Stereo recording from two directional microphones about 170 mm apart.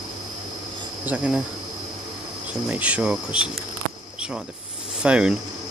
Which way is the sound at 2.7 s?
10° right (ahead or behind).